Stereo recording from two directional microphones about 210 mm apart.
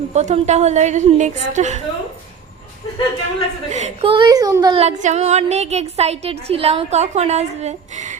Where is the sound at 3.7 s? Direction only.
35° right (ahead or behind).